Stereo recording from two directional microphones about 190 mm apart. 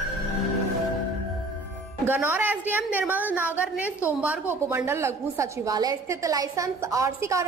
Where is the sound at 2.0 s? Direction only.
10° right (ahead or behind).